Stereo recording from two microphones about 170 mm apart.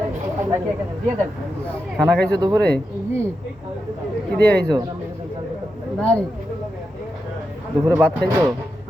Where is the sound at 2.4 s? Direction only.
20° right (ahead or behind).